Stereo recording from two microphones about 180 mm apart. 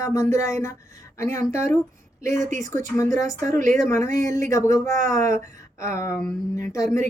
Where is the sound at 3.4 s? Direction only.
45° right (ahead or behind).